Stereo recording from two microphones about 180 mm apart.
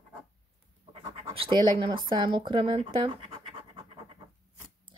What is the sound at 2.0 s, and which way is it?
Speech, 25° right (ahead or behind).